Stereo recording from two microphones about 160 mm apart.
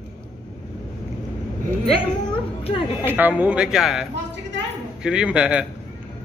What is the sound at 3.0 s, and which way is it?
Speech, 10° right (ahead or behind).